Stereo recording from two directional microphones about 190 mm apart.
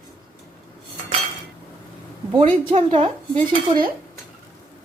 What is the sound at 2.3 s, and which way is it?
Speech, 25° right (ahead or behind).